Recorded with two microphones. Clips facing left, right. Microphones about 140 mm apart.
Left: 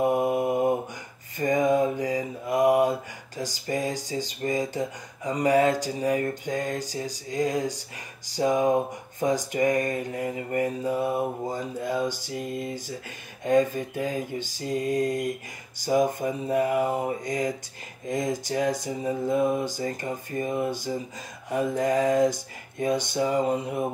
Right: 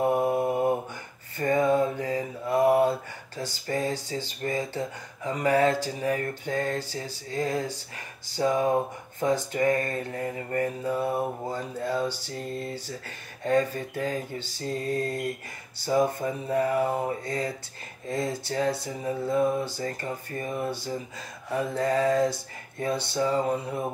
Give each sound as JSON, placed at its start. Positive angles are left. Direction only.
{"t": 0.0, "sound": "mantra", "side_deg": 15}
{"t": 8.3, "sound": "speech", "side_deg": 15}